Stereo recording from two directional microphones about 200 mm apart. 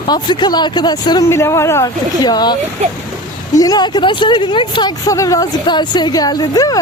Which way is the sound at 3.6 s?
20° left (ahead or behind).